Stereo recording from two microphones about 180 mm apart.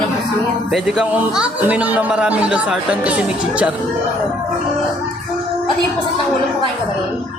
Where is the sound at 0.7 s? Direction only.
Centre (ahead or behind).